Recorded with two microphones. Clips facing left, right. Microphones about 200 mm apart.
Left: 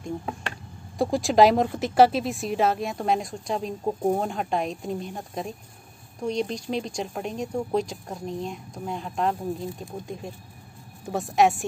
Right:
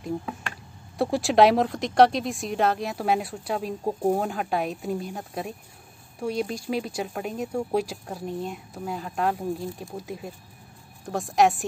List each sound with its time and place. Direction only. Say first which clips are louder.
0.2 s speech: left 1 dB; 30° left (ahead or behind)
0.9 s speech: even; centre (ahead or behind)